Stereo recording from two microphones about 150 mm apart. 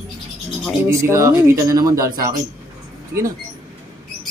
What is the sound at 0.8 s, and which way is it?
Speech, 20° right (ahead or behind).